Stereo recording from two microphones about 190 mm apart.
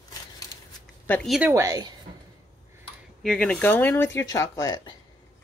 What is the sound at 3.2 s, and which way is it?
Speech, 5° left (ahead or behind).